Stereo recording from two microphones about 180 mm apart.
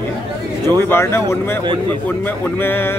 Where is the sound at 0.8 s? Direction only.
15° left (ahead or behind).